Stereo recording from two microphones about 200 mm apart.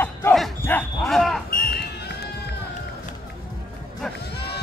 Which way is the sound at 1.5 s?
50° left (ahead or behind).